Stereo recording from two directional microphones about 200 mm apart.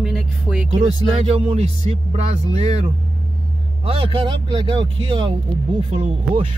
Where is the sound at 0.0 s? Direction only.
Centre (ahead or behind).